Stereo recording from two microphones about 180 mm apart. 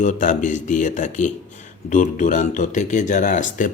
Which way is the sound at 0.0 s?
45° left (ahead or behind).